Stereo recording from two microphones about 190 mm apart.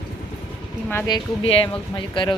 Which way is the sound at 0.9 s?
15° left (ahead or behind).